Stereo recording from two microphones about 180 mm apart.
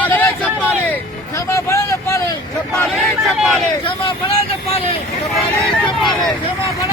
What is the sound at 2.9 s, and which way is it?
Speech, centre (ahead or behind).